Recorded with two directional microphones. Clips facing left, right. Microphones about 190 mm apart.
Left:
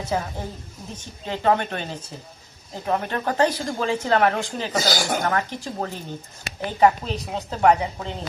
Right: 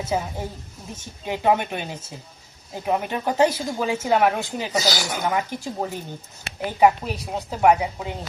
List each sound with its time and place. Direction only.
0.0 s a woman's voice: 10° right (ahead or behind)
4.8 s speech: 50° left (ahead or behind)
5.2 s a woman's voice: 10° right (ahead or behind)